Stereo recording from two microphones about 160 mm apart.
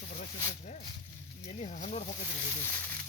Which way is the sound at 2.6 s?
10° left (ahead or behind).